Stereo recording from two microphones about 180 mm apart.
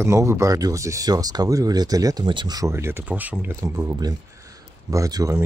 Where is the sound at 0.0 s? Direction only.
15° right (ahead or behind).